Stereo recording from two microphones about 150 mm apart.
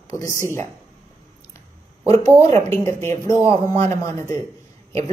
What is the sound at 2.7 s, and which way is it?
A man's voice, 15° left (ahead or behind).